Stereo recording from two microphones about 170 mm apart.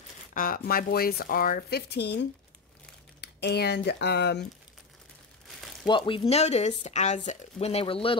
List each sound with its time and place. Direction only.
0.3 s speech: 55° left (ahead or behind); by 4.5 s 75° left (ahead or behind)
5.9 s speech: 30° left (ahead or behind)